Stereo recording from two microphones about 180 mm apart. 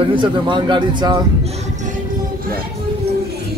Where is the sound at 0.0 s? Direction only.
25° right (ahead or behind).